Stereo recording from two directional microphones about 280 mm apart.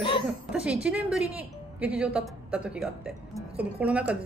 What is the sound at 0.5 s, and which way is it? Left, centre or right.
A woman's voice, centre.